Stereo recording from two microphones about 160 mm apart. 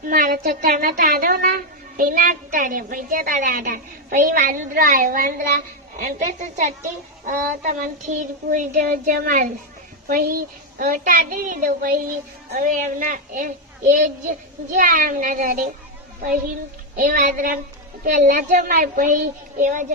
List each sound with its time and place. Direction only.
0.0 s a woman's voice: 65° right (ahead or behind)
14.7 s a woman's voice: 55° right (ahead or behind)
16.9 s a woman's voice: 55° right (ahead or behind)